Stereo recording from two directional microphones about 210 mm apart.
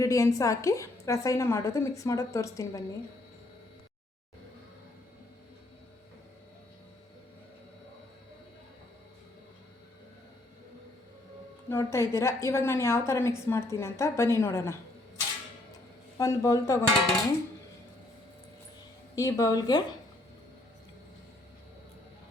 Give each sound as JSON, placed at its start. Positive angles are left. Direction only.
{"t": 0.0, "sound": "a woman's voice", "side_deg": 15}
{"t": 11.7, "sound": "a woman's voice", "side_deg": 10}
{"t": 16.1, "sound": "a woman's voice", "side_deg": 15}
{"t": 19.1, "sound": "a woman's voice", "side_deg": 15}